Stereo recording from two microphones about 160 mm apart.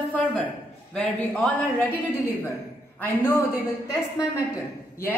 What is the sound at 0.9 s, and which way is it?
A woman's voice, 5° left (ahead or behind).